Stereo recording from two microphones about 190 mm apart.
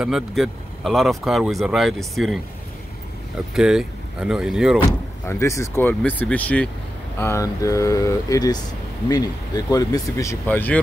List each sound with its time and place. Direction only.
0.0 s speech: centre (ahead or behind)
4.8 s speech: 15° left (ahead or behind)